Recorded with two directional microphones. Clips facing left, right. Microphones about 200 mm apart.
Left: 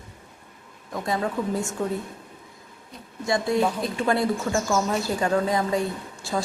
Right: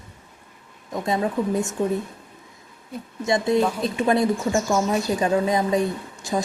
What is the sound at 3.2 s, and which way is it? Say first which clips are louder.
A woman's voice: right 2 dB; 20° right (ahead or behind).